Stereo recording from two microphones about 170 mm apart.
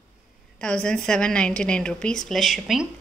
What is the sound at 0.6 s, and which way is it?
Speech, 5° left (ahead or behind).